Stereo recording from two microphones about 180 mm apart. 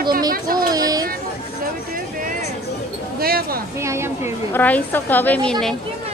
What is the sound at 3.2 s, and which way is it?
Speech, 55° right (ahead or behind).